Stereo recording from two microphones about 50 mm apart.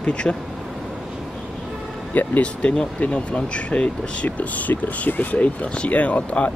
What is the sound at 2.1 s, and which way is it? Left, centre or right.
Speech, left.